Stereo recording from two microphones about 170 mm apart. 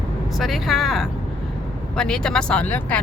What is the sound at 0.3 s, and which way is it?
Speech, centre (ahead or behind).